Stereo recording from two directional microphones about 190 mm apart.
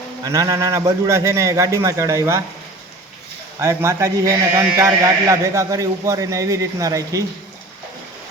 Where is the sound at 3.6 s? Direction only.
15° right (ahead or behind).